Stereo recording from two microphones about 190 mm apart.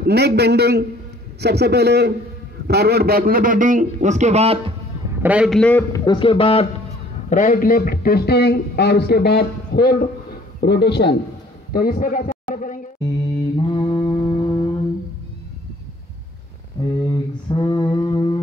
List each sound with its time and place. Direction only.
0.0 s a man's voice: 60° right (ahead or behind); by 4.7 s 30° right (ahead or behind)
5.2 s a man's voice: 5° right (ahead or behind); by 6.0 s 10° left (ahead or behind)
6.0 s a man's voice: 25° left (ahead or behind)
7.2 s a man's voice: 45° left (ahead or behind)
13.6 s mantra: 25° left (ahead or behind)
16.8 s speech: 20° left (ahead or behind)
17.1 s mantra: 25° left (ahead or behind)